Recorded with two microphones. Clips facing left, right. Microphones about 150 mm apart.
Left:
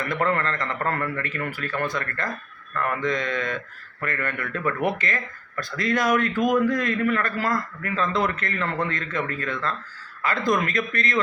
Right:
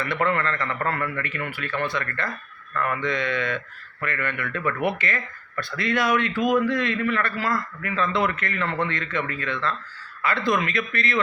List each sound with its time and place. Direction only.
0.0 s a man's voice: 40° left (ahead or behind)